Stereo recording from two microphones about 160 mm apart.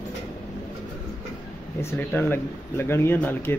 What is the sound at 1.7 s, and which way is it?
Speech, 15° left (ahead or behind).